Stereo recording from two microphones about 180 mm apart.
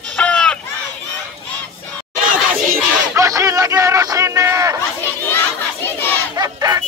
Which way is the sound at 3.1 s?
15° right (ahead or behind).